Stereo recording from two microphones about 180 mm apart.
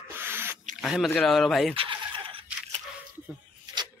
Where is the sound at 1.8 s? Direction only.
30° right (ahead or behind).